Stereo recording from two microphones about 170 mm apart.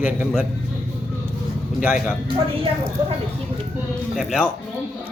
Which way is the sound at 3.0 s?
30° right (ahead or behind).